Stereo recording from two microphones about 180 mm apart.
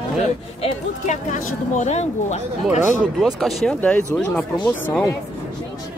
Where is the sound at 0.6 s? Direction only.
40° left (ahead or behind).